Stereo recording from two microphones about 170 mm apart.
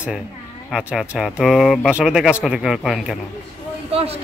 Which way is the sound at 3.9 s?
35° right (ahead or behind).